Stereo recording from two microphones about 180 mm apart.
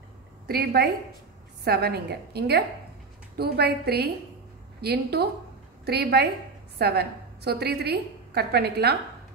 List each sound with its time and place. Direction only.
0.5 s a woman's voice: 60° right (ahead or behind)